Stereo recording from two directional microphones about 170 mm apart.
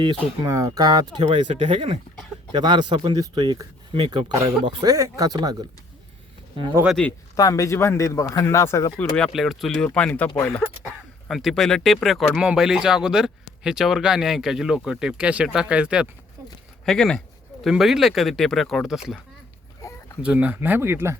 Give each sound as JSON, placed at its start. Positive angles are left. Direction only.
{"t": 0.4, "sound": "speech", "side_deg": -20}
{"t": 1.5, "sound": "speech", "side_deg": -45}
{"t": 2.5, "sound": "speech", "side_deg": -25}
{"t": 6.8, "sound": "speech", "side_deg": 5}
{"t": 7.3, "sound": "speech", "side_deg": 20}
{"t": 9.0, "sound": "speech", "side_deg": 5}
{"t": 11.3, "sound": "speech", "side_deg": 0}
{"t": 20.2, "sound": "speech", "side_deg": -10}